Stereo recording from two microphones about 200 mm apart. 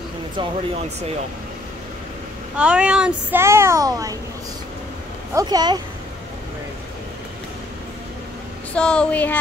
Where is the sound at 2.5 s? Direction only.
5° right (ahead or behind).